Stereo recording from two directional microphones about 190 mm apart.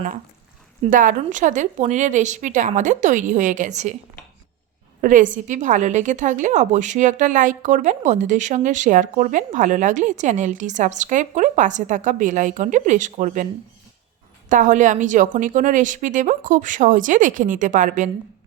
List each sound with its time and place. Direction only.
0.9 s a woman's voice: 45° right (ahead or behind)
4.9 s a woman's voice: 40° right (ahead or behind)
14.5 s a woman's voice: 40° right (ahead or behind)